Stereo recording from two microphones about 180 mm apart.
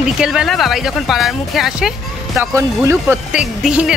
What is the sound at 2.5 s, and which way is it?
Speech, 15° right (ahead or behind).